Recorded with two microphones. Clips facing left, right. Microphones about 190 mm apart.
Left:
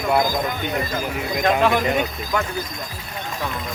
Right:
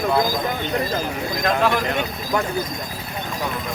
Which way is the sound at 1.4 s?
5° left (ahead or behind).